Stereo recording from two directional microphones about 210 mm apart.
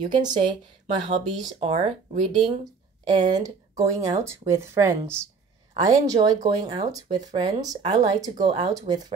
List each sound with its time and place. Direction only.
0.0 s speech: 20° right (ahead or behind)